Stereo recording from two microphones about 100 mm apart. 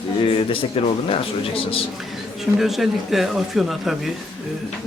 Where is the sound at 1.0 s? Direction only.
65° left (ahead or behind).